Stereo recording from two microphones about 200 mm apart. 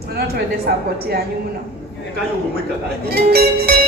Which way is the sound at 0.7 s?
50° right (ahead or behind).